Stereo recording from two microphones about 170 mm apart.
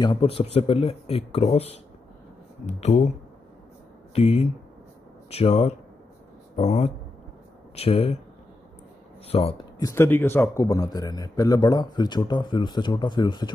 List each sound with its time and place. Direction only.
0.0 s speech: 30° left (ahead or behind)
4.1 s speech: 35° left (ahead or behind)
9.3 s speech: 35° left (ahead or behind)
9.8 s a man's voice: 15° left (ahead or behind)